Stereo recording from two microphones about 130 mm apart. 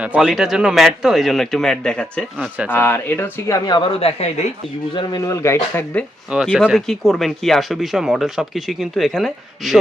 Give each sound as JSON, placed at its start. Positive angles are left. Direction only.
{"t": 0.0, "sound": "speech", "side_deg": -10}
{"t": 4.0, "sound": "speech", "side_deg": 55}
{"t": 4.9, "sound": "speech", "side_deg": 30}
{"t": 6.3, "sound": "speech", "side_deg": -5}